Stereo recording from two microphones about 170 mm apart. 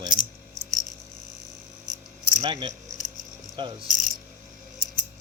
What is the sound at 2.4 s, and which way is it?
Cricket, 30° right (ahead or behind).